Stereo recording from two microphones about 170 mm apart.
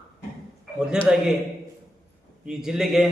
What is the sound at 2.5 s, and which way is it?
Speech, 5° right (ahead or behind).